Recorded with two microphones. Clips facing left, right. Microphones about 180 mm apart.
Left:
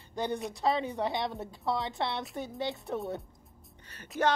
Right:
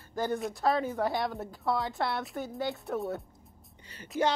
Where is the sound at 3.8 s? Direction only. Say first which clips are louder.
Right 3 dB; 10° right (ahead or behind).